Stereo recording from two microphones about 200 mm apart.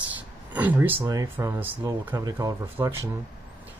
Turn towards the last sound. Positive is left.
turn(degrees=-15)  # may be behind; listen again after turning